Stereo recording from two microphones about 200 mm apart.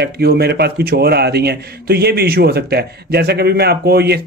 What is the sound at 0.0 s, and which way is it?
A man's voice, 50° right (ahead or behind).